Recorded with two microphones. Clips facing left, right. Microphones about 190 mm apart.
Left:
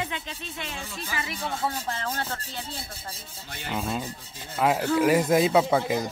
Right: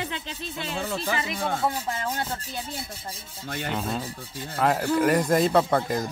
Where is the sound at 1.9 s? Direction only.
15° right (ahead or behind).